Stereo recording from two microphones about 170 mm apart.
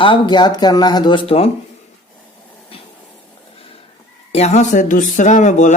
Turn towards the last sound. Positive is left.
turn(degrees=45)  # may be behind; listen again after turning